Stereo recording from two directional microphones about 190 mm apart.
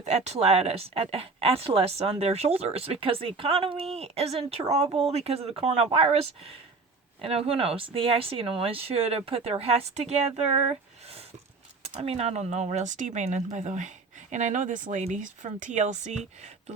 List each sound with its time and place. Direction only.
0.0 s speech: 35° right (ahead or behind)
11.8 s speech: 35° right (ahead or behind)